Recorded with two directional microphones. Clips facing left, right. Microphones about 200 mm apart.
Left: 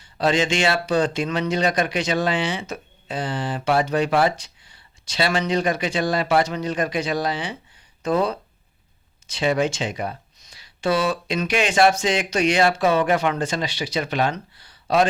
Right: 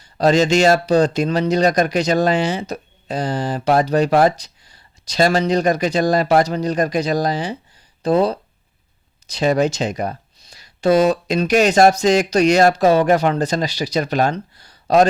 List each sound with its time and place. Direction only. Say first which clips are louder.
0.0 s speech: right 6 dB; 40° right (ahead or behind)